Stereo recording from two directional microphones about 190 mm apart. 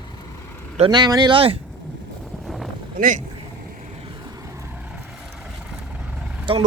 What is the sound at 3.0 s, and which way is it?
Speech, 45° right (ahead or behind).